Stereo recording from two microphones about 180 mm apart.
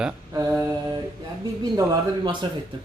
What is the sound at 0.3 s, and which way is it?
Mantra, 15° right (ahead or behind).